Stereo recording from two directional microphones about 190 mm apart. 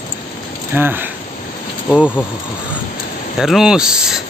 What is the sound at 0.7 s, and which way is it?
Speech, 10° right (ahead or behind).